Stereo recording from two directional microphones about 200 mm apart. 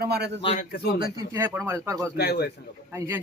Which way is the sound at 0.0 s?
55° right (ahead or behind).